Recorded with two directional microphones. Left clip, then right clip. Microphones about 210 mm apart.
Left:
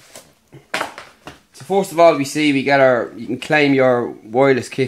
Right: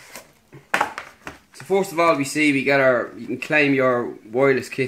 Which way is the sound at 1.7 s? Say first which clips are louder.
Left 6 dB; 45° left (ahead or behind).